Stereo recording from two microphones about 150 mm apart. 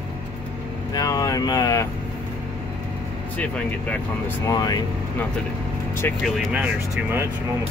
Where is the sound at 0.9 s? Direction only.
25° left (ahead or behind).